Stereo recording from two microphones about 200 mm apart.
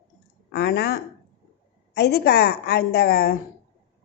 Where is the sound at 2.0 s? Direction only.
55° left (ahead or behind).